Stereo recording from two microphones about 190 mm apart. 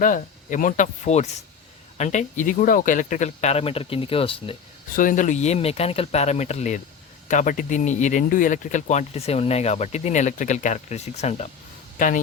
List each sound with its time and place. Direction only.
0.0 s speech: 45° left (ahead or behind); by 4.5 s 30° left (ahead or behind)
4.9 s speech: 45° left (ahead or behind)